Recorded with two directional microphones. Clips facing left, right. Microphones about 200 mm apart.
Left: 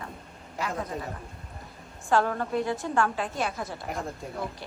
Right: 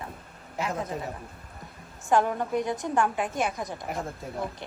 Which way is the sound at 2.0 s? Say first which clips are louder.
Right 1 dB; 15° right (ahead or behind).